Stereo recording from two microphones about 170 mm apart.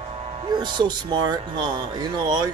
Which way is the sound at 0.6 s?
25° right (ahead or behind).